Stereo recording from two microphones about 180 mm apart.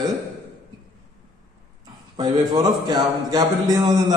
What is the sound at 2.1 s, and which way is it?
A man's voice, 25° right (ahead or behind).